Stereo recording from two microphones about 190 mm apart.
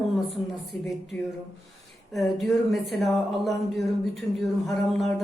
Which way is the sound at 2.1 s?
Centre (ahead or behind).